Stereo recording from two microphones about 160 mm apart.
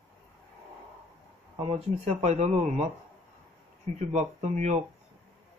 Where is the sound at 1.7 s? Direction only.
45° right (ahead or behind).